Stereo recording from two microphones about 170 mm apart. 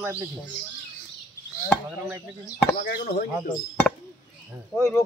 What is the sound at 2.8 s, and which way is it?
Speech, 65° left (ahead or behind).